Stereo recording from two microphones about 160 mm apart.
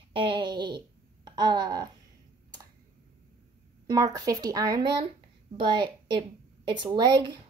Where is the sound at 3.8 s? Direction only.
20° right (ahead or behind).